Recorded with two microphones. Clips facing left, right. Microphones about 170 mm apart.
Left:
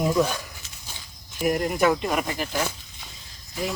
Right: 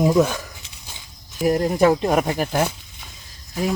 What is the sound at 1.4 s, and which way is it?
Speech, 35° right (ahead or behind).